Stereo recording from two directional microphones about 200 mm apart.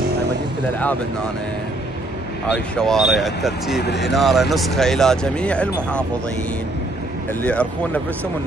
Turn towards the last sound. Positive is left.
turn(degrees=5)  # may be behind; listen again after turning